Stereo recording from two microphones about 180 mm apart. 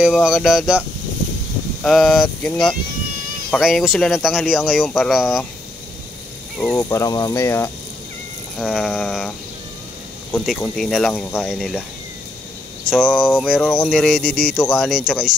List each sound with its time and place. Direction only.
0.0 s speech: 5° right (ahead or behind)
6.7 s speech: 15° left (ahead or behind)
8.5 s speech: centre (ahead or behind)
10.3 s speech: centre (ahead or behind)
12.9 s speech: centre (ahead or behind)